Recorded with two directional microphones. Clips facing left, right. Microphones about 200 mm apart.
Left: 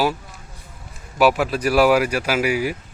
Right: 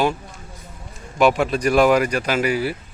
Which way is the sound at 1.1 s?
5° left (ahead or behind).